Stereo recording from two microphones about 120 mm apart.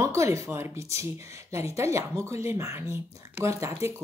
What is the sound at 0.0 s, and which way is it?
Speech, 25° right (ahead or behind).